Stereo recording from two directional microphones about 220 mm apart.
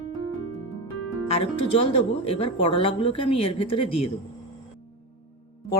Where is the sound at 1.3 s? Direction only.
25° left (ahead or behind).